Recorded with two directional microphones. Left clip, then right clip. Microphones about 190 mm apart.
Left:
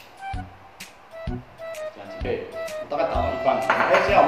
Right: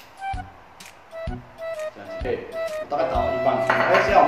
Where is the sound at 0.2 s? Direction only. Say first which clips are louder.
Right 4 dB; centre (ahead or behind).